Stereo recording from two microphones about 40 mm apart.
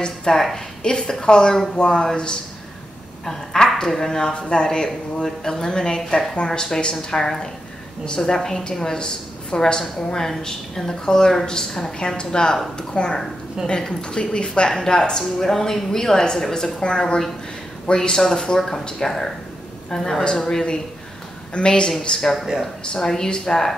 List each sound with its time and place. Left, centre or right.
0.0 s a woman's voice: left
16.8 s a woman's voice: left
17.9 s a woman's voice: centre
20.2 s a woman's voice: left
21.5 s a woman's voice: left
22.2 s speech: centre
22.9 s a woman's voice: centre